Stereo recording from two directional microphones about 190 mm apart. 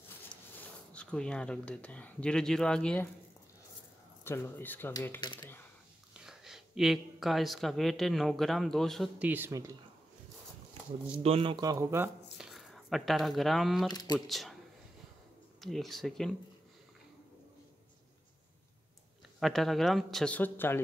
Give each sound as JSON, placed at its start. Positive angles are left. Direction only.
{"t": 0.3, "sound": "speech", "side_deg": 5}
{"t": 4.2, "sound": "speech", "side_deg": 15}
{"t": 5.2, "sound": "speech", "side_deg": 20}
{"t": 6.2, "sound": "speech", "side_deg": 0}
{"t": 11.2, "sound": "speech", "side_deg": -30}
{"t": 12.4, "sound": "speech", "side_deg": 0}
{"t": 13.8, "sound": "speech", "side_deg": 20}
{"t": 14.1, "sound": "speech", "side_deg": 0}
{"t": 15.6, "sound": "speech", "side_deg": 0}
{"t": 19.4, "sound": "speech", "side_deg": 0}